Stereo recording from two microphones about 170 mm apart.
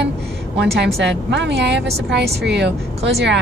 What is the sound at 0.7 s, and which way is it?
A woman's voice, 90° right.